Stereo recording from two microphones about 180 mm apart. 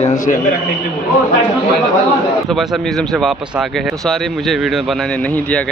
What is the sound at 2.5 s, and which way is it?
Speech, centre (ahead or behind).